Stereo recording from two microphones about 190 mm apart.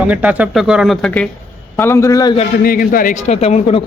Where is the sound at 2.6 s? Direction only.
50° left (ahead or behind); by 3.8 s 35° left (ahead or behind).